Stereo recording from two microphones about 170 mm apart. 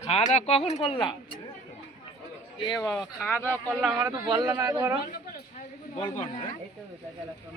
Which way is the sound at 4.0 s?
20° right (ahead or behind).